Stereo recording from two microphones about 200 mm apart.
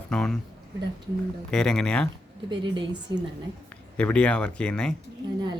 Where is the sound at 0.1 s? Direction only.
Centre (ahead or behind).